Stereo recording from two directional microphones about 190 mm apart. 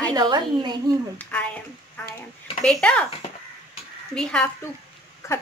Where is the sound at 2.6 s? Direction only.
5° left (ahead or behind).